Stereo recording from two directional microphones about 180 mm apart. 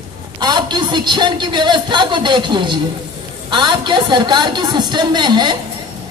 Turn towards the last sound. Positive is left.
turn(degrees=-25)  # may be behind; listen again after turning